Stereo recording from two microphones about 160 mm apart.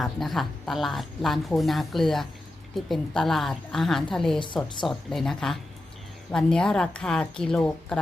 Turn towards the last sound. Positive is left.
turn(degrees=5)  # may be behind; listen again after turning